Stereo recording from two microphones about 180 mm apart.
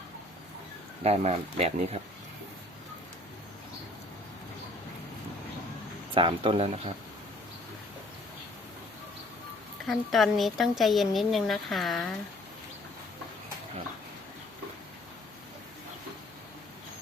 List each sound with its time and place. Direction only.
1.0 s speech: 35° right (ahead or behind)
6.1 s speech: 30° right (ahead or behind)
9.8 s speech: centre (ahead or behind)